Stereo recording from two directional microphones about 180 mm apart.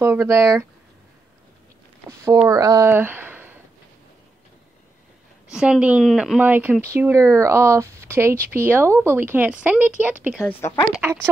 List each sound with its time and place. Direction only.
0.0 s speech: 15° right (ahead or behind)
2.0 s speech: 15° right (ahead or behind)
5.5 s speech: 5° right (ahead or behind)
10.4 s speech: 10° left (ahead or behind)
11.0 s speech: 10° right (ahead or behind)